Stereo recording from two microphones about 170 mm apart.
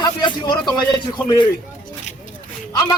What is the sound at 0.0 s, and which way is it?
A man's voice, 25° left (ahead or behind).